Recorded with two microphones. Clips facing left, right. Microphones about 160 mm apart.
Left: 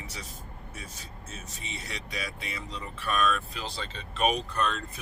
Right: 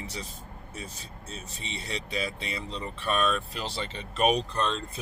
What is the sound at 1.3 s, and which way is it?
Speech, 30° right (ahead or behind).